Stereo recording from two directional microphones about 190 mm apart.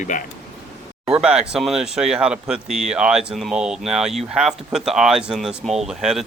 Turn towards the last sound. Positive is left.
turn(degrees=0)  # may be behind; listen again after turning